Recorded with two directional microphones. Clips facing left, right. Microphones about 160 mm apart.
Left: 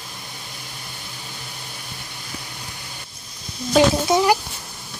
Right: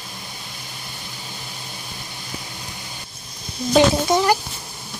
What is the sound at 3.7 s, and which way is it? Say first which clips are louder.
Speech: even; 5° left (ahead or behind).